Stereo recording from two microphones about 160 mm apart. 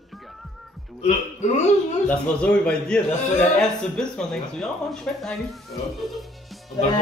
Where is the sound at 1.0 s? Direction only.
45° left (ahead or behind).